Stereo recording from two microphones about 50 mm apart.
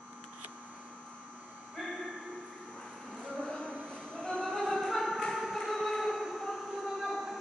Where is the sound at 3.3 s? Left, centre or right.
Centre.